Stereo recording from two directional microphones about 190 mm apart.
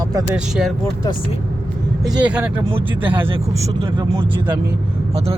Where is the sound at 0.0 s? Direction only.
20° right (ahead or behind).